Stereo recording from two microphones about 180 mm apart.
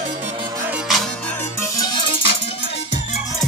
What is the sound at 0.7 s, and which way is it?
Music, centre (ahead or behind).